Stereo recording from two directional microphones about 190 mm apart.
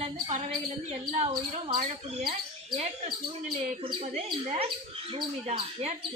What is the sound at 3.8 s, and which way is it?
Speech, 35° right (ahead or behind).